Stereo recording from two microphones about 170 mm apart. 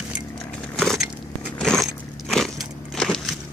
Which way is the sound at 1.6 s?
5° left (ahead or behind).